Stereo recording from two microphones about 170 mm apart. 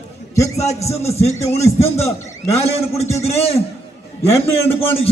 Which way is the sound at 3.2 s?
35° left (ahead or behind).